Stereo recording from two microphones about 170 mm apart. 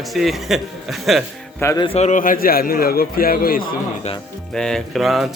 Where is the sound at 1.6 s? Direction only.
15° left (ahead or behind).